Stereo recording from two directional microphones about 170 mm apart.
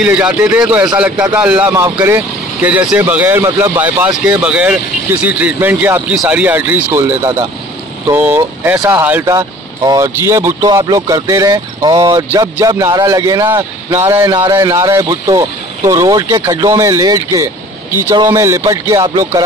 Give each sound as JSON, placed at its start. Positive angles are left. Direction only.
{"t": 0.0, "sound": "speech", "side_deg": -5}
{"t": 9.0, "sound": "speech", "side_deg": -10}